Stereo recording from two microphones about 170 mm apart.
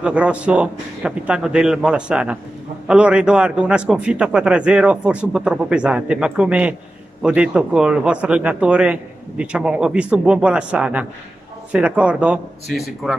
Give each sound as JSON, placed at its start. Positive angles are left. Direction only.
{"t": 0.0, "sound": "speech", "side_deg": -5}